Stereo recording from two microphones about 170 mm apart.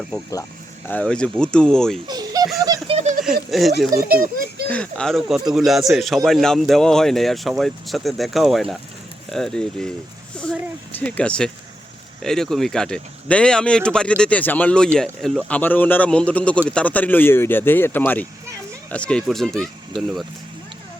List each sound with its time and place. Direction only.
0.9 s speech: 5° left (ahead or behind)
2.0 s baby laughter: 20° right (ahead or behind)
2.8 s a sound: 40° right (ahead or behind)
3.2 s speech: centre (ahead or behind)